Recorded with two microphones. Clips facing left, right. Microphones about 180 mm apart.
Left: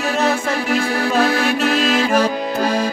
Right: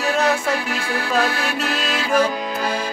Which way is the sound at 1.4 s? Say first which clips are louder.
Left 7 dB; 40° left (ahead or behind).